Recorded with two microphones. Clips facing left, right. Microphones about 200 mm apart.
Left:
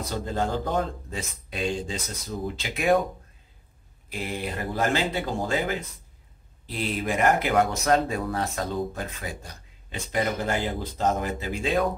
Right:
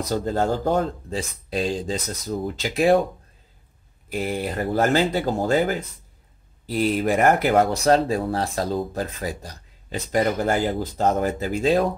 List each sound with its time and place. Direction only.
0.0 s speech: 40° right (ahead or behind)
4.7 s speech: 40° right (ahead or behind)